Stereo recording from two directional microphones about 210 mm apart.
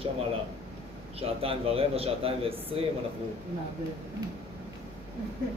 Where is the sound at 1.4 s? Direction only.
25° right (ahead or behind).